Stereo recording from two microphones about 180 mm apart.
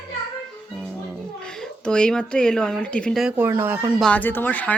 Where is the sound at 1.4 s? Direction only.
5° left (ahead or behind).